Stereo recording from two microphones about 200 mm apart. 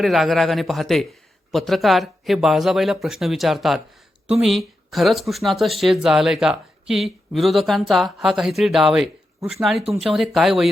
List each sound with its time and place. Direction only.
0.0 s speech: centre (ahead or behind)